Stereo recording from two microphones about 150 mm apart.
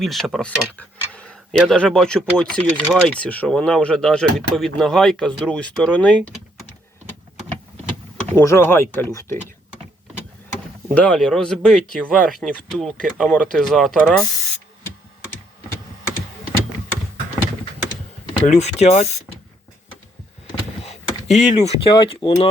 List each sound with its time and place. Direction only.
0.0 s speech: centre (ahead or behind)
8.3 s speech: 15° left (ahead or behind)
10.9 s speech: 5° left (ahead or behind)
18.4 s speech: 50° left (ahead or behind)
20.8 s door: 50° left (ahead or behind)
21.9 s speech: 30° left (ahead or behind)